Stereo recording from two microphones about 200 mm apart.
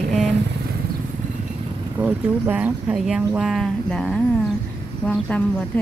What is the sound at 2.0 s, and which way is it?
A woman's voice, 10° right (ahead or behind).